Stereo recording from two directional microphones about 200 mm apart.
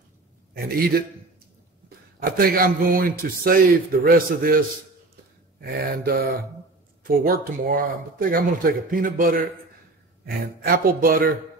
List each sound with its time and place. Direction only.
0.6 s speech: 50° right (ahead or behind)
2.1 s speech: 45° right (ahead or behind)